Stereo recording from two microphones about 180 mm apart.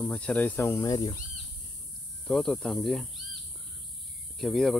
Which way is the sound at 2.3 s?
Centre (ahead or behind).